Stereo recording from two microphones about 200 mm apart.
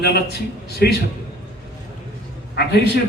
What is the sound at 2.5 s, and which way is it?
Speech, 55° left (ahead or behind).